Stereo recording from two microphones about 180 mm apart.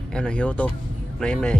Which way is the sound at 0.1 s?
5° left (ahead or behind).